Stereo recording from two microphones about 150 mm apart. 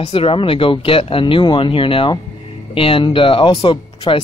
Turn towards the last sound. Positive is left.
turn(degrees=35)  # may be behind; listen again after turning